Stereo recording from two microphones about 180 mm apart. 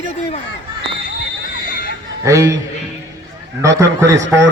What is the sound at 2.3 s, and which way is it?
Speech, 20° right (ahead or behind).